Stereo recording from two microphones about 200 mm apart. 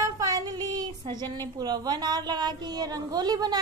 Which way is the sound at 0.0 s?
15° right (ahead or behind).